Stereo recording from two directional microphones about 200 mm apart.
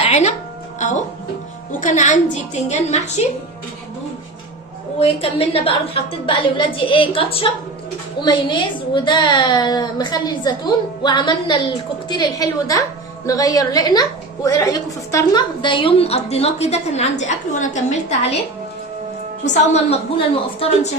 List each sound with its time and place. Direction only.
0.0 s music: 30° left (ahead or behind)
0.8 s a woman's voice: 35° left (ahead or behind)
4.9 s a woman's voice: 30° left (ahead or behind)
19.5 s a woman's voice: 30° left (ahead or behind)